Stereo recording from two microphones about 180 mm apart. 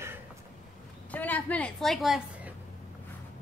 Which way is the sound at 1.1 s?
10° left (ahead or behind).